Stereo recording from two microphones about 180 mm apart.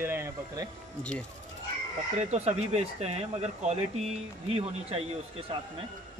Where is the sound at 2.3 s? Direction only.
35° right (ahead or behind).